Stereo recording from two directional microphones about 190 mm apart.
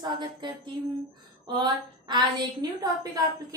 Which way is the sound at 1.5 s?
20° right (ahead or behind).